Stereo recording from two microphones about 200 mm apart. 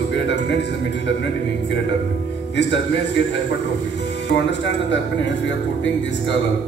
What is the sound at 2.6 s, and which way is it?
Speech, 60° left (ahead or behind).